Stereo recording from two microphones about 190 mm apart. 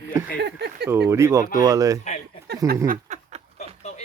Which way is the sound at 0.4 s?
60° right (ahead or behind).